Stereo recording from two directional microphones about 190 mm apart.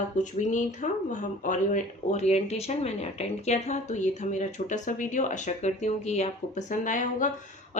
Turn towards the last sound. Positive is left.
turn(degrees=40)  # may be behind; listen again after turning